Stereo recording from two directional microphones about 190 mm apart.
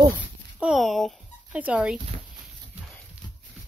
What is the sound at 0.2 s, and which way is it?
Dog, 5° right (ahead or behind).